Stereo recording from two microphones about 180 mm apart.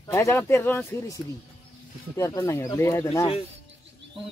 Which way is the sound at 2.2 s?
15° left (ahead or behind).